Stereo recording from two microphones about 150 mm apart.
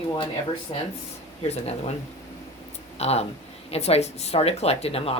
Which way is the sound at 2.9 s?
45° left (ahead or behind).